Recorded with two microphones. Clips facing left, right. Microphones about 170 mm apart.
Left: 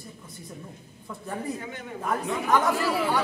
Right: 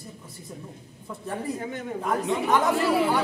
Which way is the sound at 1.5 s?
40° right (ahead or behind).